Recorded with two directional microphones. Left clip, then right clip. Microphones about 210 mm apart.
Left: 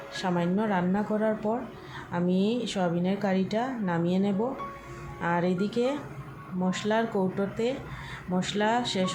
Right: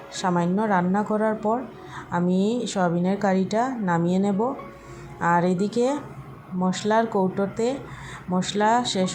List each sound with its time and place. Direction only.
0.1 s a woman's voice: 15° right (ahead or behind)